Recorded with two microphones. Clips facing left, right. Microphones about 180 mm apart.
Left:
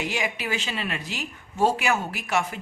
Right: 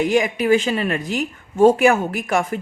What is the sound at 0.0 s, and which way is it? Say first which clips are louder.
A woman's voice: right 11 dB; 50° right (ahead or behind).